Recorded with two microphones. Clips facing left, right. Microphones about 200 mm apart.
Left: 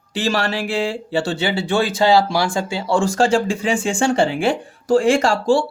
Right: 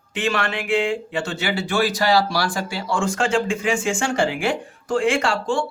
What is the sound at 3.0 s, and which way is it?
Speech, 35° left (ahead or behind).